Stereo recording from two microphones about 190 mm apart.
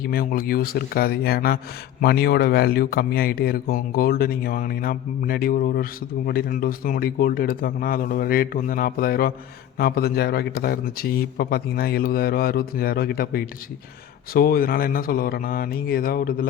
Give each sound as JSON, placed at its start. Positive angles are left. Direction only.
{"t": 0.1, "sound": "speech", "side_deg": 50}